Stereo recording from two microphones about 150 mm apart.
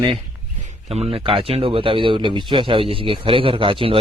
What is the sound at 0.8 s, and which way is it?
Speech, 40° right (ahead or behind).